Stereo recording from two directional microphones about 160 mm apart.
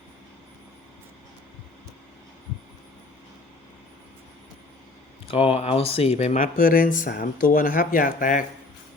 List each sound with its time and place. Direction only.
5.3 s speech: 35° left (ahead or behind); by 8.4 s 55° left (ahead or behind)